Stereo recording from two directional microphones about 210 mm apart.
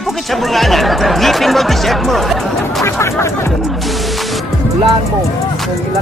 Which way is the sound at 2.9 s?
10° left (ahead or behind).